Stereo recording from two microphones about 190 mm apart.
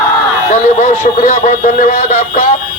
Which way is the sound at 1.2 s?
40° left (ahead or behind).